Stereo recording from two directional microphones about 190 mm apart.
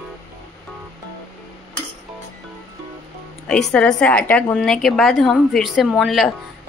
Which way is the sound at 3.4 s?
5° left (ahead or behind).